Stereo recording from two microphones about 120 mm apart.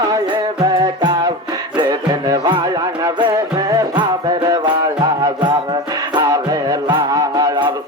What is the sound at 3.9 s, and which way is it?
Music, 40° right (ahead or behind).